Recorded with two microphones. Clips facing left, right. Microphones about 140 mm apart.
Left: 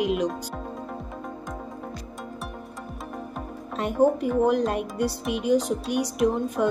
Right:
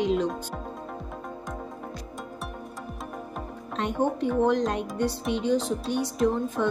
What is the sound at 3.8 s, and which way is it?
A woman's voice, 5° left (ahead or behind).